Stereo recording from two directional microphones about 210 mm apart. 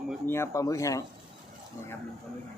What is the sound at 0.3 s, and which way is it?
Speech, 10° left (ahead or behind).